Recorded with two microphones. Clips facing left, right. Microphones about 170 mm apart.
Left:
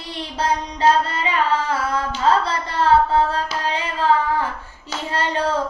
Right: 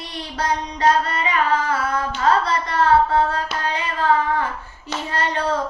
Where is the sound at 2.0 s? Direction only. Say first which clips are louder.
Left 1 dB; 30° left (ahead or behind).